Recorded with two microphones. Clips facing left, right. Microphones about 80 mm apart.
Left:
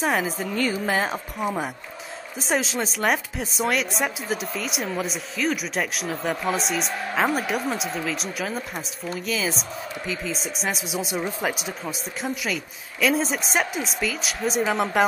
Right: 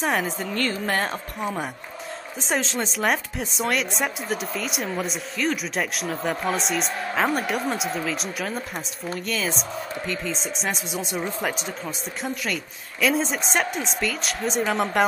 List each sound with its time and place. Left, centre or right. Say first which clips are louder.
0.0 s speech: left 1 dB; centre